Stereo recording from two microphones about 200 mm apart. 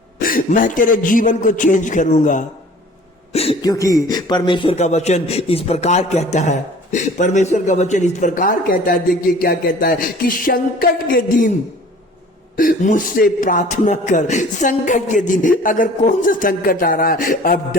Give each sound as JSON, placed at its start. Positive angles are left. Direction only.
{"t": 0.2, "sound": "speech", "side_deg": 45}
{"t": 3.6, "sound": "speech", "side_deg": 20}
{"t": 9.4, "sound": "music", "side_deg": 45}
{"t": 12.5, "sound": "speech", "side_deg": 40}